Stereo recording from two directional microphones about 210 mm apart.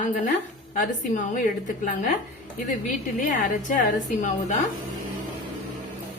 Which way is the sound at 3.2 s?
40° left (ahead or behind).